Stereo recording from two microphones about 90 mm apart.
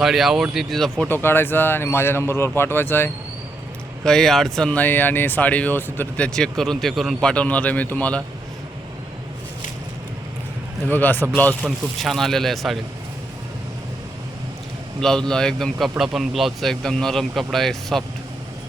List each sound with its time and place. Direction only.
0.0 s a man's voice: 5° right (ahead or behind)
1.0 s a man's voice: 25° left (ahead or behind)
4.0 s a man's voice: 5° left (ahead or behind)
4.7 s speech: 20° left (ahead or behind)
10.9 s a man's voice: 20° left (ahead or behind)
11.9 s a man's voice: 5° left (ahead or behind)
15.0 s a man's voice: 5° left (ahead or behind)